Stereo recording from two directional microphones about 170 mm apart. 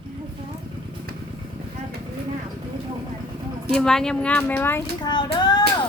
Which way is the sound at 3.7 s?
5° left (ahead or behind).